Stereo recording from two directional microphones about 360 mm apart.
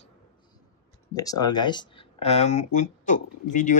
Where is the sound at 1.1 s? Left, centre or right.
Centre.